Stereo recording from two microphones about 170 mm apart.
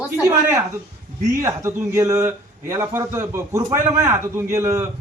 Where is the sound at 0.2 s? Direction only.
15° right (ahead or behind).